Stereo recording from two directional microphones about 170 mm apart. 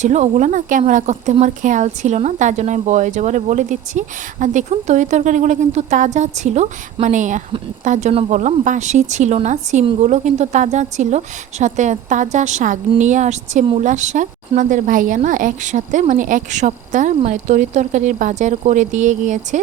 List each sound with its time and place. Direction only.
0.0 s a woman's voice: 45° right (ahead or behind)